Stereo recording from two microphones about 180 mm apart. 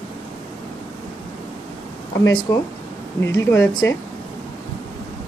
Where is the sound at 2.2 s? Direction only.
20° left (ahead or behind).